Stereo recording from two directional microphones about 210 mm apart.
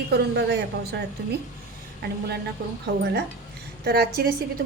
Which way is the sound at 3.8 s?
50° right (ahead or behind).